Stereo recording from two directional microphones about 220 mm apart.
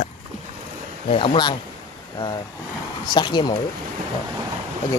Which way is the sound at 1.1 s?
20° left (ahead or behind).